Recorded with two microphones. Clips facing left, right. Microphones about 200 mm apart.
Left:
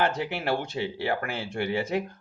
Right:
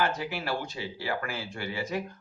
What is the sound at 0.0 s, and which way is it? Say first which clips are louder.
Speech: left 3 dB; 60° left (ahead or behind).